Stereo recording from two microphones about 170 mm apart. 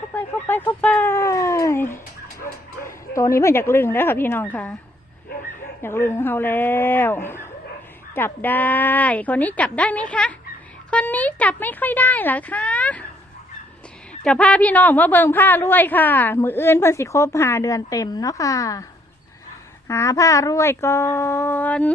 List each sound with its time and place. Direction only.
0.1 s a woman's voice: 10° left (ahead or behind)
3.2 s a woman's voice: 15° left (ahead or behind)
5.8 s a woman's voice: 15° left (ahead or behind)
14.1 s a woman's voice: 5° left (ahead or behind)
19.9 s a woman's voice: 15° left (ahead or behind)